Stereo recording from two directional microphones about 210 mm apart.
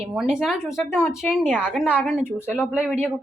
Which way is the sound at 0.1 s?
Centre (ahead or behind).